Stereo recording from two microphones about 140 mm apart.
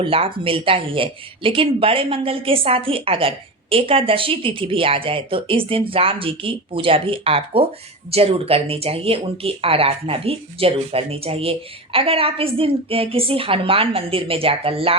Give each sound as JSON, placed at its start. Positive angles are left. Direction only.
{"t": 0.0, "sound": "speech", "side_deg": -40}